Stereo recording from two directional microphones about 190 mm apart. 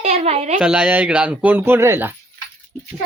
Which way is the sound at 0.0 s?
35° right (ahead or behind).